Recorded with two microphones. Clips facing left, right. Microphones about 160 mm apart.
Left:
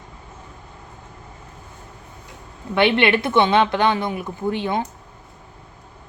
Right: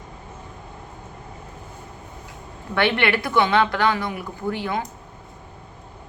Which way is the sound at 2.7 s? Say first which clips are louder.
Left 4 dB; 20° left (ahead or behind).